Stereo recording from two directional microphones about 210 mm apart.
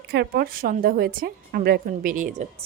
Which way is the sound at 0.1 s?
50° right (ahead or behind).